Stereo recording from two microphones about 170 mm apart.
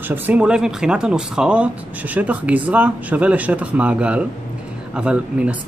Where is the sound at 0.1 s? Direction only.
5° right (ahead or behind).